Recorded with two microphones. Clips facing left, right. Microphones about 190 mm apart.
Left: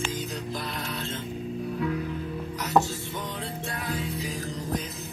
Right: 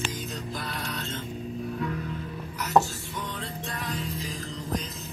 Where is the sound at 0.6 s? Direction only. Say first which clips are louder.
Left 1 dB; centre (ahead or behind).